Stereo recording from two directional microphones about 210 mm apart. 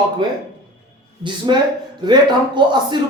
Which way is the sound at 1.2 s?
20° right (ahead or behind).